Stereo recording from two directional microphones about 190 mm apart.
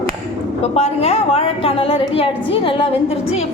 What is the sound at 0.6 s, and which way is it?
A woman's voice, 35° left (ahead or behind).